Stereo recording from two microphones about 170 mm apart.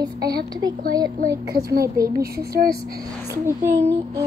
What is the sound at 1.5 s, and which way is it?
Speech, 60° right (ahead or behind).